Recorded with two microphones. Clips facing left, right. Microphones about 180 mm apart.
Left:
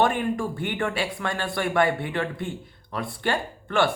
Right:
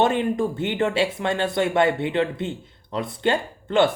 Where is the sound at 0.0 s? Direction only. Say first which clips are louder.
Right 3 dB; 20° right (ahead or behind).